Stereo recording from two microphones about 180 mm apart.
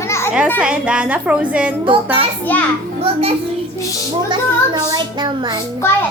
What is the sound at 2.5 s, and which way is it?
Speech, 10° left (ahead or behind).